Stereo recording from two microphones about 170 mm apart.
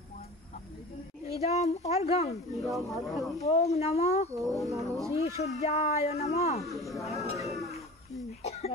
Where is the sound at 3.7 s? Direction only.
40° left (ahead or behind).